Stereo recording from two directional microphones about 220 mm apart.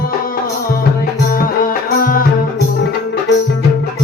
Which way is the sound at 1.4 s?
40° left (ahead or behind).